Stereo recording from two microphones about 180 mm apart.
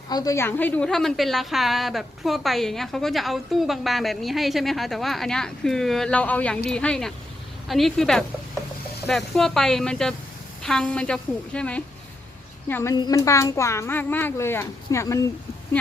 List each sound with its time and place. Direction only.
0.1 s a woman's voice: 20° left (ahead or behind)